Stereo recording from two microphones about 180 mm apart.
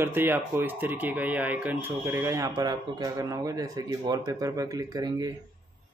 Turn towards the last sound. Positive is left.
turn(degrees=-25)  # may be behind; listen again after turning